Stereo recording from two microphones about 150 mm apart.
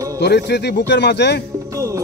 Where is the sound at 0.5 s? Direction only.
90° left.